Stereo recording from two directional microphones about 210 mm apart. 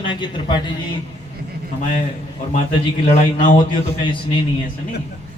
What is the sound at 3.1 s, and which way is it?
Speech, 40° left (ahead or behind).